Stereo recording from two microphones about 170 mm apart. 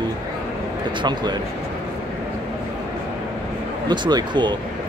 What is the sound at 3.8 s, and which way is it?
Speech, 25° right (ahead or behind).